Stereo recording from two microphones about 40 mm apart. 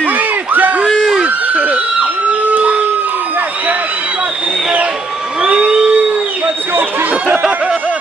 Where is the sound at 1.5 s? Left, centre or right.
Right.